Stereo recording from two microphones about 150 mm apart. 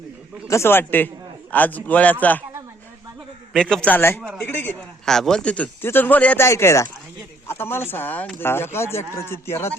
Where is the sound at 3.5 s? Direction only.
5° left (ahead or behind).